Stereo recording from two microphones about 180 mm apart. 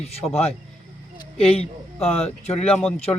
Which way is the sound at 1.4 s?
35° left (ahead or behind).